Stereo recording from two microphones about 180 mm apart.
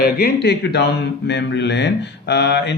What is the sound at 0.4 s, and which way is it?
Speech, 70° left (ahead or behind).